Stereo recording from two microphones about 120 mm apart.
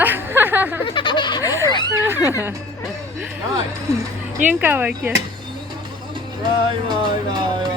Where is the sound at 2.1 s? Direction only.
20° right (ahead or behind).